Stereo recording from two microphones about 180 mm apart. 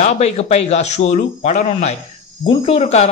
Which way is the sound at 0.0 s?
35° left (ahead or behind).